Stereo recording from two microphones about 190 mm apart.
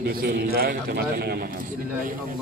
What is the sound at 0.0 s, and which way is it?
A man's voice, 55° right (ahead or behind).